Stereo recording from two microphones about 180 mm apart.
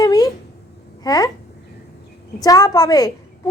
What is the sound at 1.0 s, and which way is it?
Speech, 20° left (ahead or behind).